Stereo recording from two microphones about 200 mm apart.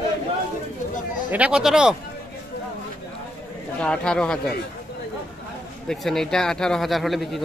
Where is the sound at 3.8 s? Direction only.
5° left (ahead or behind).